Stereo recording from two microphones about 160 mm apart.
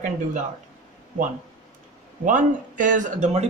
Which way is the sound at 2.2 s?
50° right (ahead or behind).